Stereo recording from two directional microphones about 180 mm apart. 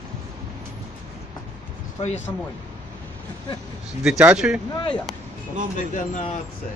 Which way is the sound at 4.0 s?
5° right (ahead or behind).